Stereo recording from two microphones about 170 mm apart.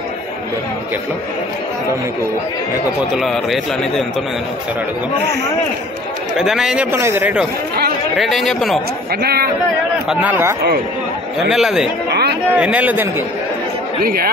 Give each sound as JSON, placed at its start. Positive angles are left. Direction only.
{"t": 3.1, "sound": "a man's voice", "side_deg": 0}
{"t": 6.3, "sound": "speech", "side_deg": 0}
{"t": 8.2, "sound": "a man's voice", "side_deg": 0}
{"t": 9.1, "sound": "speech", "side_deg": -70}
{"t": 10.0, "sound": "speech", "side_deg": -10}
{"t": 11.5, "sound": "a man's voice", "side_deg": 0}
{"t": 12.1, "sound": "a sound", "side_deg": -70}
{"t": 12.5, "sound": "speech", "side_deg": -5}
{"t": 14.0, "sound": "speech", "side_deg": -60}